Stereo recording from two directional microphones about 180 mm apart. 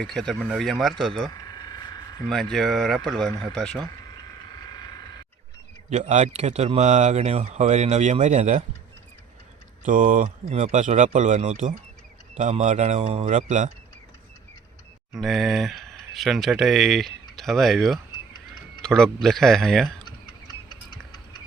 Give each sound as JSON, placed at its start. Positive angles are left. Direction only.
{"t": 0.0, "sound": "speech", "side_deg": 5}
{"t": 1.3, "sound": "a sound", "side_deg": 20}
{"t": 2.3, "sound": "speech", "side_deg": 0}
{"t": 5.9, "sound": "speech", "side_deg": -40}
{"t": 9.8, "sound": "speech", "side_deg": -45}
{"t": 15.1, "sound": "speech", "side_deg": 0}